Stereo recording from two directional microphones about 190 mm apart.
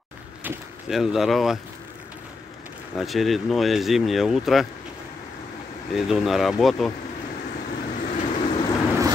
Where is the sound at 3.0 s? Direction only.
Centre (ahead or behind).